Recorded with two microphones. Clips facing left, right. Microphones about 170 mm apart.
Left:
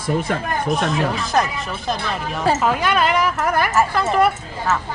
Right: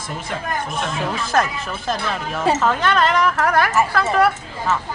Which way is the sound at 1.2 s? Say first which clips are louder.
Even; centre (ahead or behind).